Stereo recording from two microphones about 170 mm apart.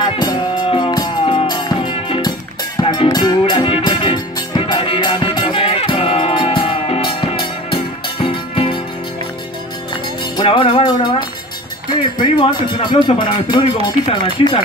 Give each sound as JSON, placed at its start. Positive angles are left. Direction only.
{"t": 0.0, "sound": "music", "side_deg": 25}
{"t": 10.3, "sound": "music", "side_deg": 30}
{"t": 12.2, "sound": "speech", "side_deg": 25}